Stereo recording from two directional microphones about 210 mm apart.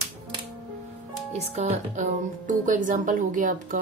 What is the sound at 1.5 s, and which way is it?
A woman's voice, 35° right (ahead or behind).